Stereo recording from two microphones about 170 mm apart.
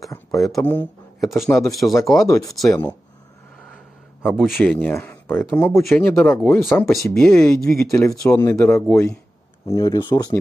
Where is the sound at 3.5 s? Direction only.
5° left (ahead or behind).